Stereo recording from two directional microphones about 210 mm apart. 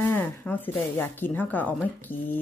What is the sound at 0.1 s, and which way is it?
Speech, 10° left (ahead or behind).